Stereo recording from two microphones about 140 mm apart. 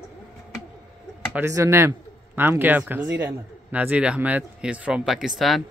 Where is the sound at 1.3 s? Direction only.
20° right (ahead or behind).